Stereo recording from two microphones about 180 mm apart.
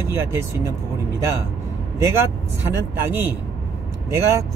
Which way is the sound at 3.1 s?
10° right (ahead or behind).